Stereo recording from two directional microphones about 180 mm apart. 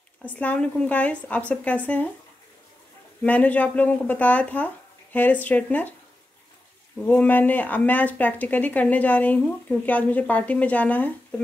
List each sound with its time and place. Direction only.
0.2 s speech: 10° left (ahead or behind)
3.3 s speech: 10° left (ahead or behind)
7.0 s speech: 10° left (ahead or behind)